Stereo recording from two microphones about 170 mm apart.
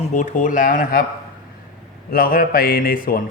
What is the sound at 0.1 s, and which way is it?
Speech, 50° left (ahead or behind).